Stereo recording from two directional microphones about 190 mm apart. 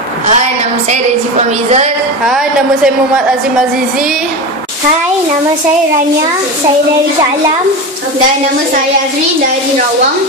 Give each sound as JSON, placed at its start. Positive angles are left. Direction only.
{"t": 0.3, "sound": "a woman's voice", "side_deg": -35}
{"t": 2.2, "sound": "a woman's voice", "side_deg": 0}